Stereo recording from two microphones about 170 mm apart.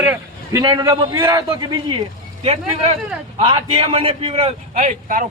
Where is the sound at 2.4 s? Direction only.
35° right (ahead or behind); by 5.2 s 50° right (ahead or behind).